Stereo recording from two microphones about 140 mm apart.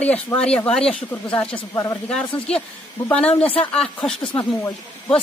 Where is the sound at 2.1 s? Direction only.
5° left (ahead or behind).